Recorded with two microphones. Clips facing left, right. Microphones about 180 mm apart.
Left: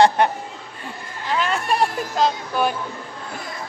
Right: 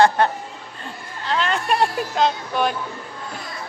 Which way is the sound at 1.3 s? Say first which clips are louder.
Even; 10° left (ahead or behind).